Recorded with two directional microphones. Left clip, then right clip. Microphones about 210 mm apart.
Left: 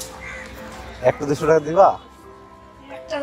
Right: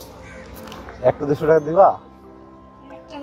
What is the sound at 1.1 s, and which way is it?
Speech, centre (ahead or behind).